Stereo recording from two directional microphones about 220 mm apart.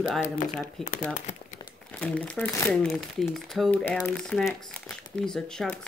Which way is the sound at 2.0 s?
5° left (ahead or behind).